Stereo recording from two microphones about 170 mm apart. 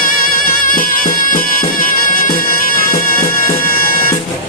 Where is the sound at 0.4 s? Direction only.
55° left (ahead or behind).